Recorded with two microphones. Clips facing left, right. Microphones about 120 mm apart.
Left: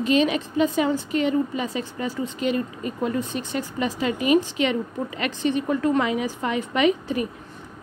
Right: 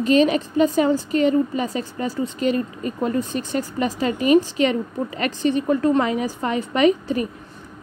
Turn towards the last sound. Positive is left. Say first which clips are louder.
# right 3 dB
turn(degrees=-40)  # may be behind; listen again after turning